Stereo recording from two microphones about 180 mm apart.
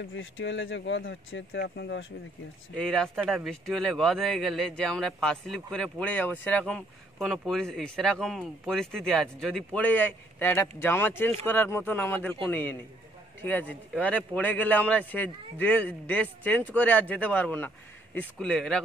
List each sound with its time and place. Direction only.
0.0 s speech: 90° left; by 2.0 s 75° left (ahead or behind)
2.7 s a man's voice: 5° left (ahead or behind)